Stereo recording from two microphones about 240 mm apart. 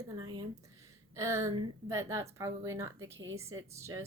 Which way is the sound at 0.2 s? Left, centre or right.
Centre.